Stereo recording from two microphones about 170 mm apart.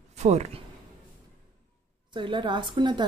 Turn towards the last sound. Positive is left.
turn(degrees=-25)  # may be behind; listen again after turning